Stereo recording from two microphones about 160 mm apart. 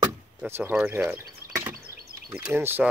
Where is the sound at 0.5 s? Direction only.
15° right (ahead or behind).